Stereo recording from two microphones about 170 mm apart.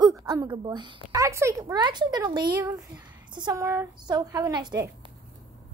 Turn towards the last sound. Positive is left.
turn(degrees=-25)  # may be behind; listen again after turning